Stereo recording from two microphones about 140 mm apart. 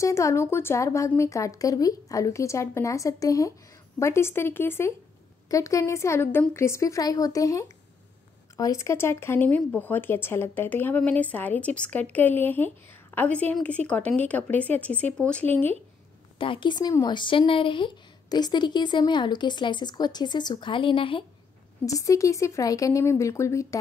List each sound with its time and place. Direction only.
0.0 s a woman's voice: 20° left (ahead or behind)
16.3 s a woman's voice: 35° left (ahead or behind)
21.8 s a woman's voice: 25° left (ahead or behind)